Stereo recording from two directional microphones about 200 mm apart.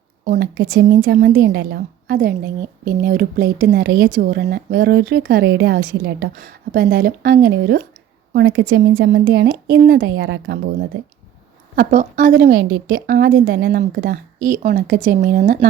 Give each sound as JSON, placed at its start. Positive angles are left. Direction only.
{"t": 0.3, "sound": "a woman's voice", "side_deg": -50}
{"t": 9.2, "sound": "a woman's voice", "side_deg": -55}
{"t": 10.2, "sound": "a woman's voice", "side_deg": -65}
{"t": 11.8, "sound": "a woman's voice", "side_deg": -40}